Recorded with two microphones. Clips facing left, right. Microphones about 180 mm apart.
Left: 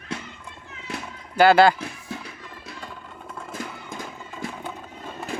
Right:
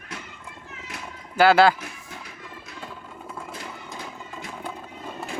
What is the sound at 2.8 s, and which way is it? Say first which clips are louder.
Vehicle: right 3 dB; 5° right (ahead or behind).